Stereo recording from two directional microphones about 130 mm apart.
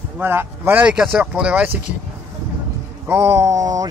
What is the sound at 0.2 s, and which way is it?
Speech, 15° right (ahead or behind).